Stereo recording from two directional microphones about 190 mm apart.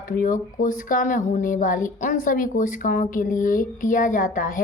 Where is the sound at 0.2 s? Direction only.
45° left (ahead or behind).